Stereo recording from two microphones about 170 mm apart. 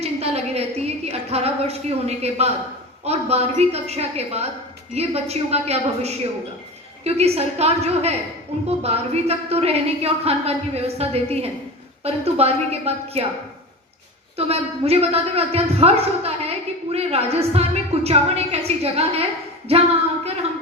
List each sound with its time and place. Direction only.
0.0 s a woman's voice: 40° right (ahead or behind)
14.3 s a man's voice: 35° right (ahead or behind)